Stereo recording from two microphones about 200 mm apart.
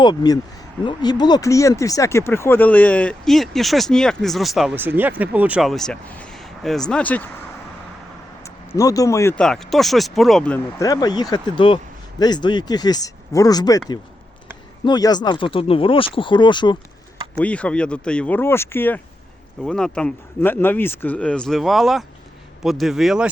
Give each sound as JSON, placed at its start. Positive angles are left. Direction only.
{"t": 0.0, "sound": "speech", "side_deg": 20}
{"t": 8.4, "sound": "speech", "side_deg": 15}
{"t": 17.3, "sound": "speech", "side_deg": 5}